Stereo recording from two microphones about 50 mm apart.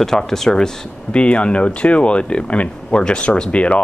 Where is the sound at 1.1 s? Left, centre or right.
Left.